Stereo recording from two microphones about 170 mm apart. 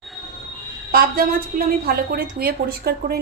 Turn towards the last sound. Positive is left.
turn(degrees=-65)  # may be behind; listen again after turning